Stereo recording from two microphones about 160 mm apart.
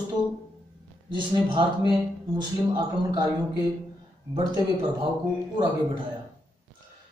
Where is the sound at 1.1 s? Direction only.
30° right (ahead or behind).